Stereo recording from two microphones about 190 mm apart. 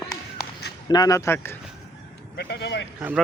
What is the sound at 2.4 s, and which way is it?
Speech, 60° left (ahead or behind).